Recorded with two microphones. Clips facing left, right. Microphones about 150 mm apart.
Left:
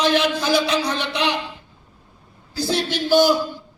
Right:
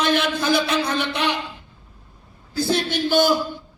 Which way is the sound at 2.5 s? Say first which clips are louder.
Right 1 dB; 55° right (ahead or behind).